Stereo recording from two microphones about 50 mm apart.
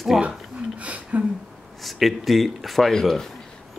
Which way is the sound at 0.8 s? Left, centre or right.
Right.